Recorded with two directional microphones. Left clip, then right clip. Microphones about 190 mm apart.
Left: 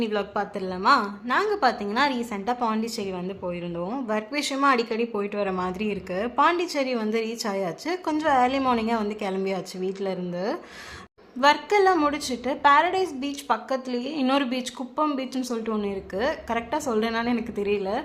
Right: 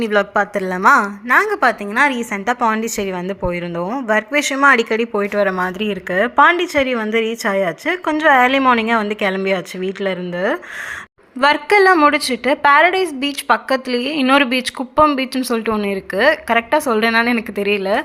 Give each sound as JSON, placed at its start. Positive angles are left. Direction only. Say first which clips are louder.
{"t": 0.0, "sound": "a woman's voice", "louder": "right 11 dB", "side_deg": -20}